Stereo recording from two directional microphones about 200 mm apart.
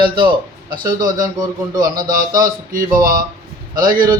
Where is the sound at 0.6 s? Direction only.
45° right (ahead or behind).